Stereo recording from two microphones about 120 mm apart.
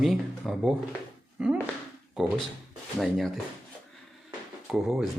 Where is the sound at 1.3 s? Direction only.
10° right (ahead or behind).